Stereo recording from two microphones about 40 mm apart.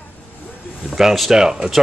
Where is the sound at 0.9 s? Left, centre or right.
Centre.